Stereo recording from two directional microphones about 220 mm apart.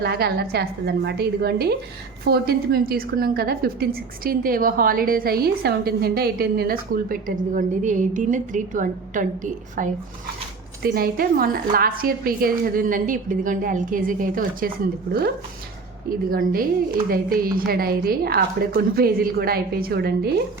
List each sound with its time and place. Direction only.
0.0 s a woman's voice: 45° right (ahead or behind)
16.0 s a woman's voice: 40° right (ahead or behind)